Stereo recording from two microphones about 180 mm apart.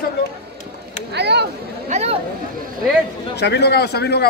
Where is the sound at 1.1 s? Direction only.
70° right (ahead or behind).